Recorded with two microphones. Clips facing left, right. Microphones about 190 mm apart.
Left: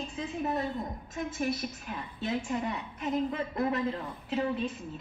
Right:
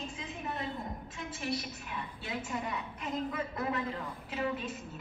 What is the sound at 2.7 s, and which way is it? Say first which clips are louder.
A woman's voice: left 5 dB; 30° left (ahead or behind).